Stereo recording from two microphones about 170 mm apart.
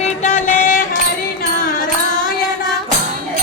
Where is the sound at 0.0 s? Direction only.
45° left (ahead or behind).